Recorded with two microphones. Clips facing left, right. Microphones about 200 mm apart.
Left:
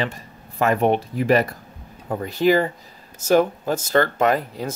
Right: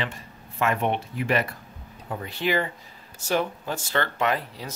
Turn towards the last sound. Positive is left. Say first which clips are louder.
# left 6 dB
turn(degrees=45)  # may be behind; listen again after turning